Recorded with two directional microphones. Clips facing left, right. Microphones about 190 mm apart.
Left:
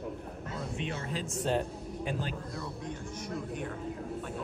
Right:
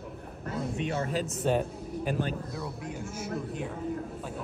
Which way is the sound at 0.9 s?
45° right (ahead or behind).